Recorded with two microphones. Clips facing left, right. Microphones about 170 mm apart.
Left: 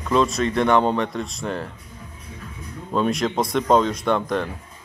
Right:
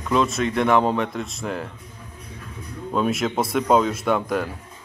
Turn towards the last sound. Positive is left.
turn(degrees=-5)  # may be behind; listen again after turning